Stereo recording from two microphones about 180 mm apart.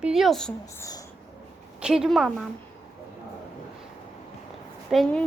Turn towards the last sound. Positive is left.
turn(degrees=0)  # may be behind; listen again after turning